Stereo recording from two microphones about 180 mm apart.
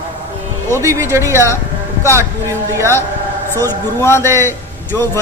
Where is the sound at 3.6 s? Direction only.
15° left (ahead or behind).